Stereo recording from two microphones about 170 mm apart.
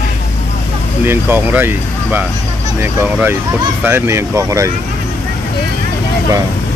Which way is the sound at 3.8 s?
15° right (ahead or behind).